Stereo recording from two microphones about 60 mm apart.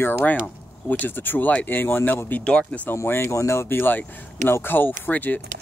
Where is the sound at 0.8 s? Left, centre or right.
Left.